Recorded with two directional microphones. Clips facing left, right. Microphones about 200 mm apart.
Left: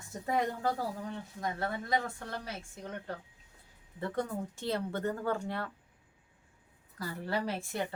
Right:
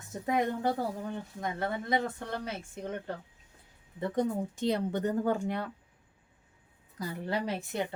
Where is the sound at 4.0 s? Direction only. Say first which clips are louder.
Right 5 dB; 20° right (ahead or behind).